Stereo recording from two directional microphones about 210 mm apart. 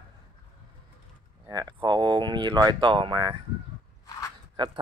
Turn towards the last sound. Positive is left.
turn(degrees=-25)  # may be behind; listen again after turning